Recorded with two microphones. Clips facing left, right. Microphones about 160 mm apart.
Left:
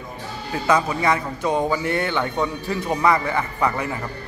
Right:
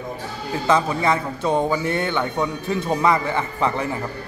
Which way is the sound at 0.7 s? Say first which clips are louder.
Even; 25° right (ahead or behind).